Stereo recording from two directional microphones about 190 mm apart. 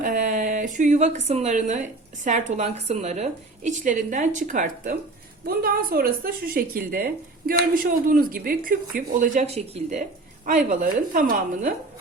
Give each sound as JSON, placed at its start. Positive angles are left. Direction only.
{"t": 0.0, "sound": "a woman's voice", "side_deg": -45}